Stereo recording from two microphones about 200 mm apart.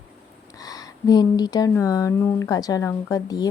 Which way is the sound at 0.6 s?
20° left (ahead or behind).